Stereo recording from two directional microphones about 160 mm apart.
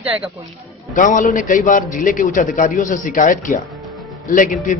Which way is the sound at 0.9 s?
55° left (ahead or behind).